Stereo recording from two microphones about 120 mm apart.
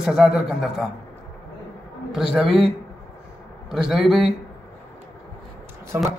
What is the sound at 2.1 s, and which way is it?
Speech, 5° right (ahead or behind).